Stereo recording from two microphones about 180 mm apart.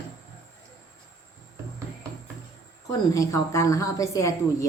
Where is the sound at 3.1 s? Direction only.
15° left (ahead or behind).